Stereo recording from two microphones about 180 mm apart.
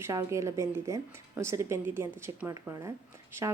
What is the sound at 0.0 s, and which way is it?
Speech, 15° right (ahead or behind).